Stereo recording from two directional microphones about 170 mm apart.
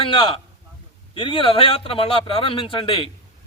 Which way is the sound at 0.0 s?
30° left (ahead or behind).